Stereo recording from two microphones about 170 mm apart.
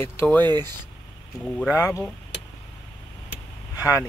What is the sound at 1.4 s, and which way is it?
Speech, 5° left (ahead or behind).